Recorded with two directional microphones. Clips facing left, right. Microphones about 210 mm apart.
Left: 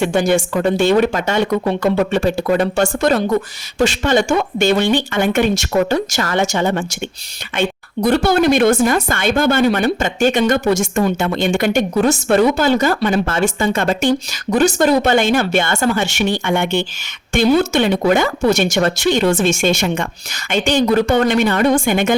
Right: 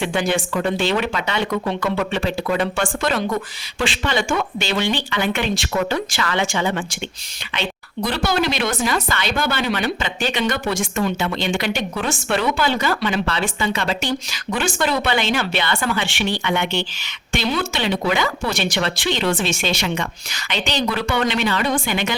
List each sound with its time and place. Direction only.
0.0 s a woman's voice: 45° left (ahead or behind)